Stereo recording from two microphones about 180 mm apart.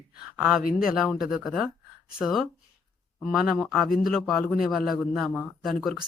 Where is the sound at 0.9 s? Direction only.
Centre (ahead or behind).